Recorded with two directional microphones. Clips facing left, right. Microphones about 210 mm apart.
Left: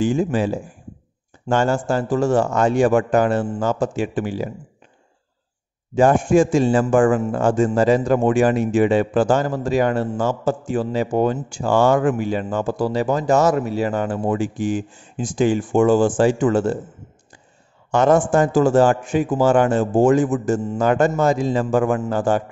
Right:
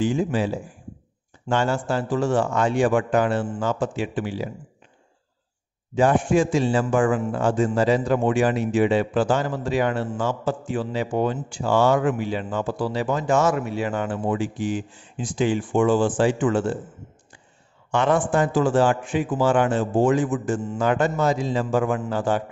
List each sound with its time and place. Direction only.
0.0 s a man's voice: 45° left (ahead or behind)
5.9 s a man's voice: 45° left (ahead or behind)
17.9 s a man's voice: 45° left (ahead or behind)